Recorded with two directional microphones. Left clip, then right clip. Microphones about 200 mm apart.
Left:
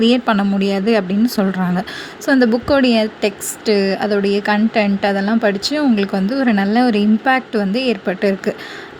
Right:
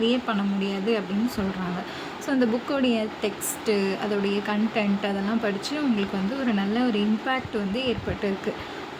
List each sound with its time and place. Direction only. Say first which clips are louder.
0.0 s a woman's voice: left 10 dB; 40° left (ahead or behind)